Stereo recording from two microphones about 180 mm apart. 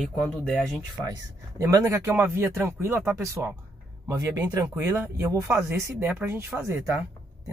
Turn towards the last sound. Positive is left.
turn(degrees=-15)  # may be behind; listen again after turning